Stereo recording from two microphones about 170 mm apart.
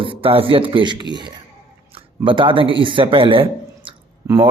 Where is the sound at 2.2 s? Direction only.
30° right (ahead or behind).